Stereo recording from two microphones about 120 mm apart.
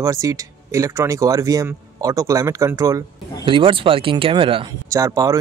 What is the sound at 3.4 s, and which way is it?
Speech, 45° right (ahead or behind).